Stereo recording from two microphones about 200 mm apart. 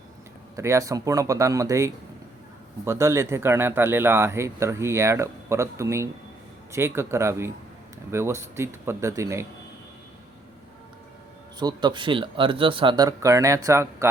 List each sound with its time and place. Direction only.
0.5 s speech: 15° right (ahead or behind)
11.6 s speech: 20° right (ahead or behind)